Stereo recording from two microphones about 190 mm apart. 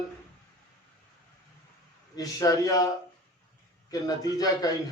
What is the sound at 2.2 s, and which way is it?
Speech, 20° left (ahead or behind).